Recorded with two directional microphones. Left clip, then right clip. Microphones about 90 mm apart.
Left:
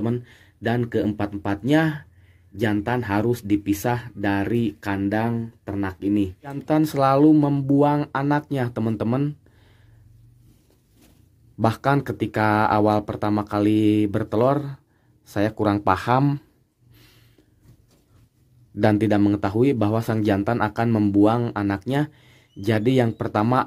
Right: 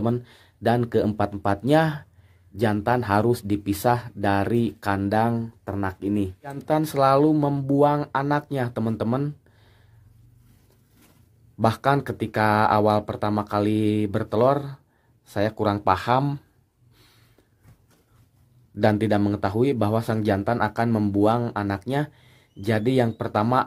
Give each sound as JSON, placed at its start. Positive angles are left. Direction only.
{"t": 0.0, "sound": "speech", "side_deg": -25}
{"t": 6.4, "sound": "speech", "side_deg": 5}
{"t": 11.5, "sound": "speech", "side_deg": 0}
{"t": 18.8, "sound": "speech", "side_deg": 10}